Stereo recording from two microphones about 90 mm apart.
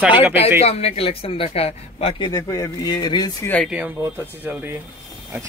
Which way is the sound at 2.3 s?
40° left (ahead or behind).